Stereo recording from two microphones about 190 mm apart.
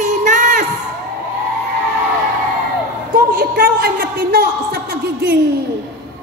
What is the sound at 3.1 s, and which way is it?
A woman's voice, 50° right (ahead or behind).